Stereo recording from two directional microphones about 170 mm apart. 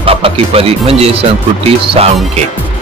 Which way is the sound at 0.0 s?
35° right (ahead or behind).